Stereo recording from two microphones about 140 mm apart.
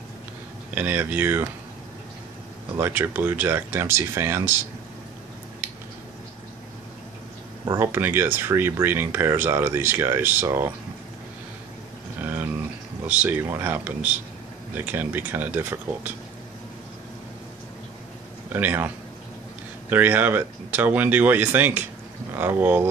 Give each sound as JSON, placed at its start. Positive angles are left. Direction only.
{"t": 0.7, "sound": "speech", "side_deg": -10}
{"t": 2.8, "sound": "speech", "side_deg": -15}
{"t": 7.6, "sound": "speech", "side_deg": -20}
{"t": 12.2, "sound": "a sound", "side_deg": -15}
{"t": 13.0, "sound": "speech", "side_deg": -10}
{"t": 18.5, "sound": "speech", "side_deg": -15}
{"t": 19.9, "sound": "speech", "side_deg": -10}